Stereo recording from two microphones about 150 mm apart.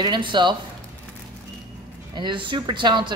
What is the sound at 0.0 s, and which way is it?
Speech, 30° right (ahead or behind).